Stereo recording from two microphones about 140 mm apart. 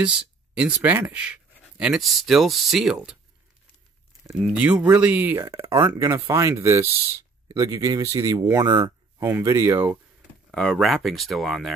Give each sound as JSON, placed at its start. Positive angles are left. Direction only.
{"t": 0.0, "sound": "speech", "side_deg": -5}
{"t": 1.8, "sound": "speech", "side_deg": 0}
{"t": 4.4, "sound": "speech", "side_deg": -10}
{"t": 10.5, "sound": "speech", "side_deg": 5}